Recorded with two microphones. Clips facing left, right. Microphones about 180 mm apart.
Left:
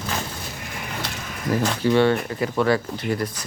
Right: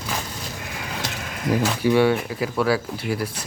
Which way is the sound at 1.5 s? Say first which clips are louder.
Even; 10° right (ahead or behind).